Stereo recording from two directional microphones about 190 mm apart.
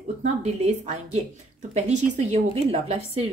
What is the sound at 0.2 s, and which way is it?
A woman's voice, 35° right (ahead or behind).